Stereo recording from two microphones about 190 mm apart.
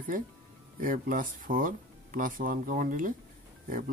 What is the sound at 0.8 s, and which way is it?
Speech, 45° right (ahead or behind).